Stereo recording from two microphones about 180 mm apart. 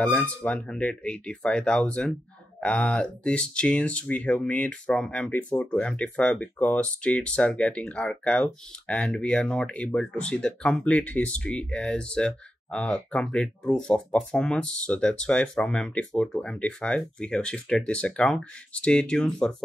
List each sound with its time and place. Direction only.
0.0 s speech: 5° left (ahead or behind)